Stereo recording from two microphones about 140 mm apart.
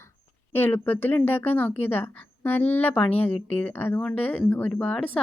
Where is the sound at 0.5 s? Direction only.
15° left (ahead or behind).